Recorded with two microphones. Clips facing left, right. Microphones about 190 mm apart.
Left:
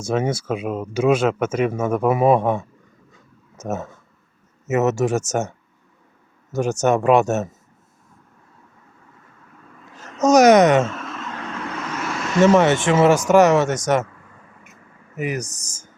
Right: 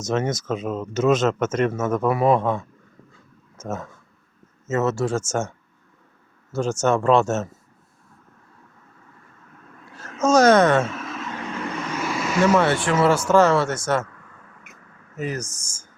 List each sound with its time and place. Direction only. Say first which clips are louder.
0.0 s speech: left 2 dB; 10° left (ahead or behind)
4.7 s speech: left 3 dB; 20° left (ahead or behind)
6.8 s speech: left 2 dB; 15° left (ahead or behind)
10.2 s speech: left 3 dB; 15° left (ahead or behind)
10.8 s vehicle: left 1 dB; centre (ahead or behind)
12.4 s speech: left 4 dB; 20° left (ahead or behind)
15.1 s speech: left 3 dB; 15° left (ahead or behind)
15.6 s speech: left 3 dB; 40° left (ahead or behind)